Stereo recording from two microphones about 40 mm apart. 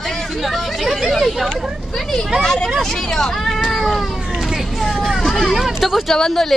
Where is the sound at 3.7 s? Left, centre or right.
Centre.